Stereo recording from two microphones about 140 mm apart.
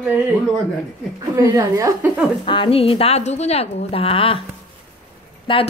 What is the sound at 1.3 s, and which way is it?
Speech, 20° right (ahead or behind).